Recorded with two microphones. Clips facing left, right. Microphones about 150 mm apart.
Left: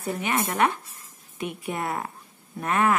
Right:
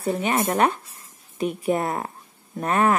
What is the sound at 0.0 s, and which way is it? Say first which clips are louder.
A woman's voice: right 4 dB; 30° right (ahead or behind).